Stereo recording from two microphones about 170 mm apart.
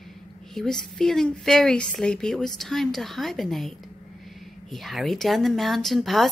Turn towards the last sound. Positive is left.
turn(degrees=0)  # may be behind; listen again after turning